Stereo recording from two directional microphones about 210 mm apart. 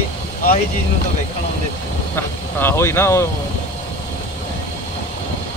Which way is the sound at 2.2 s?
10° left (ahead or behind).